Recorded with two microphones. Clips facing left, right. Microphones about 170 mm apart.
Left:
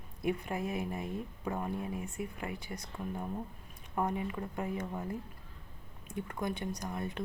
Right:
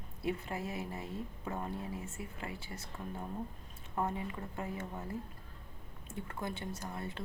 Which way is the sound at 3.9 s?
15° left (ahead or behind).